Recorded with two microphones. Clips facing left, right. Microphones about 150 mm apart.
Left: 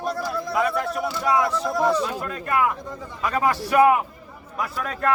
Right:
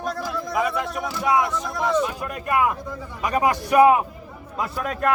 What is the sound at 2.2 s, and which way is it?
A man's voice, 15° right (ahead or behind).